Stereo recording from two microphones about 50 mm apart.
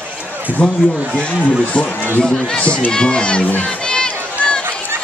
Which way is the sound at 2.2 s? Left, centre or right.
Centre.